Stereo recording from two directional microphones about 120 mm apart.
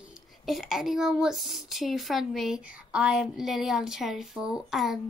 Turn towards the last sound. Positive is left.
turn(degrees=-5)  # may be behind; listen again after turning